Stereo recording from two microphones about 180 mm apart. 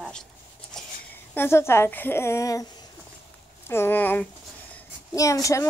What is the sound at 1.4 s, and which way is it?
A woman's voice, 15° left (ahead or behind).